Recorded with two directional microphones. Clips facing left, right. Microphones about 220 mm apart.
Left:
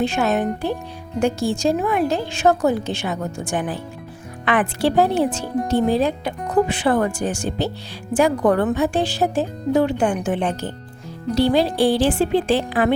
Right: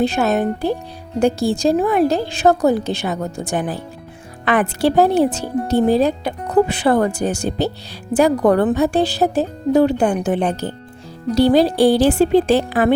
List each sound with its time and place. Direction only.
0.0 s speech: 35° right (ahead or behind)